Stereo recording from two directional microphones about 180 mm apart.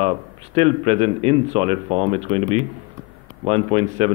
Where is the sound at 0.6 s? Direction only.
35° right (ahead or behind).